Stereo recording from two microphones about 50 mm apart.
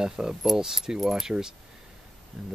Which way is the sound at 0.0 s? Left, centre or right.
Centre.